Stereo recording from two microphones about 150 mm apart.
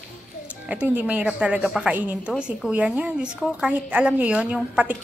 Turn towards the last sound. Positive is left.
turn(degrees=-5)  # may be behind; listen again after turning